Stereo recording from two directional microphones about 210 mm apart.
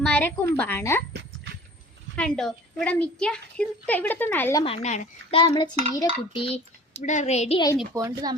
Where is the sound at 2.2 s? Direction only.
5° left (ahead or behind).